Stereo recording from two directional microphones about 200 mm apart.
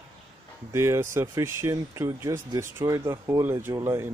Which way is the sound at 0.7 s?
15° right (ahead or behind).